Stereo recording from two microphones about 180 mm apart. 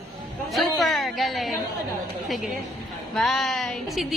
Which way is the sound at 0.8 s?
Centre (ahead or behind).